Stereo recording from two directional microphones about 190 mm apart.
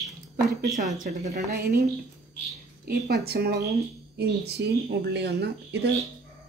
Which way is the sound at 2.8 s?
55° right (ahead or behind).